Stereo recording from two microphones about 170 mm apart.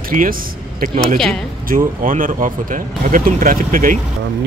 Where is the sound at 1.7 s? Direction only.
55° right (ahead or behind).